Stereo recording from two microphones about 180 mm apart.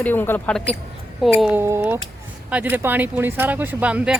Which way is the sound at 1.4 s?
10° right (ahead or behind).